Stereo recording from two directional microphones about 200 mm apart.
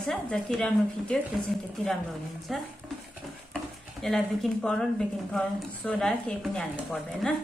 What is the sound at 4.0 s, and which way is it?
A woman's voice, centre (ahead or behind).